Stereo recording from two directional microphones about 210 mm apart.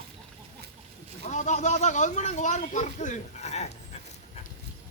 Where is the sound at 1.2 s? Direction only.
35° left (ahead or behind).